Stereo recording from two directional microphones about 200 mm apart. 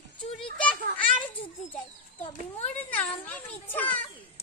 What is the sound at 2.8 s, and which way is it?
Children playing, 10° left (ahead or behind).